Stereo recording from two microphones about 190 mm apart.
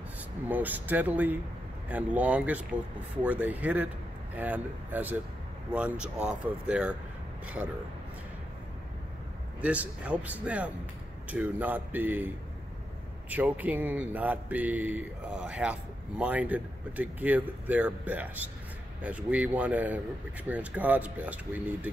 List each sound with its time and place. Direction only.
0.5 s speech: 10° right (ahead or behind)
9.6 s speech: 5° right (ahead or behind)
13.3 s speech: 10° right (ahead or behind)